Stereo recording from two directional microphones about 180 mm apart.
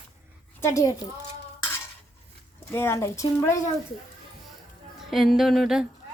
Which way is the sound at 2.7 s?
15° left (ahead or behind).